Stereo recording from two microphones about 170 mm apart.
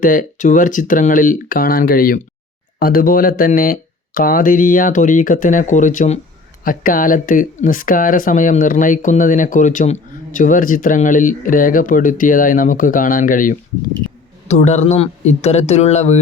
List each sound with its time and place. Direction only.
0.0 s speech: 50° left (ahead or behind)